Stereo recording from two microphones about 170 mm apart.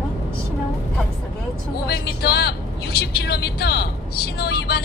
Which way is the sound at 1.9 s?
70° left (ahead or behind).